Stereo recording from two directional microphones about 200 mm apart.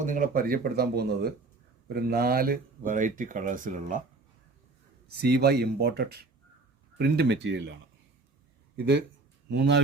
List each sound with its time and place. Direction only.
0.0 s speech: 40° right (ahead or behind)
5.2 s speech: 55° right (ahead or behind)
8.7 s speech: 55° right (ahead or behind)